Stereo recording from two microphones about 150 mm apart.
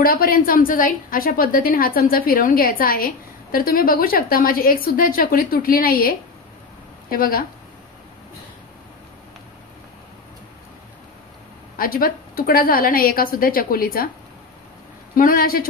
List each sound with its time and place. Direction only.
0.0 s a woman's voice: 75° left (ahead or behind)
11.8 s a woman's voice: 75° left (ahead or behind)
15.1 s a woman's voice: 75° left (ahead or behind)